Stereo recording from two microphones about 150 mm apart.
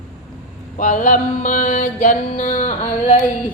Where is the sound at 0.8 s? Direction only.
60° left (ahead or behind).